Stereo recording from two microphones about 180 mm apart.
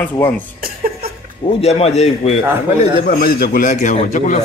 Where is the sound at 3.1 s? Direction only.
55° left (ahead or behind).